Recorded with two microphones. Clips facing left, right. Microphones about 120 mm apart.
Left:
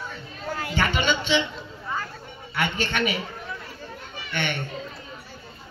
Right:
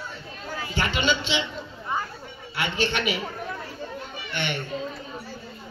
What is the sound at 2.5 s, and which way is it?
Speech, 50° left (ahead or behind).